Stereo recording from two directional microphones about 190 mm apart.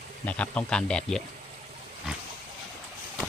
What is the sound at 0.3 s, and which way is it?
Speech, 5° left (ahead or behind).